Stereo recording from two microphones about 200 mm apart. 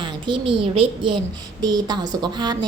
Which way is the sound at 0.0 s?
25° right (ahead or behind).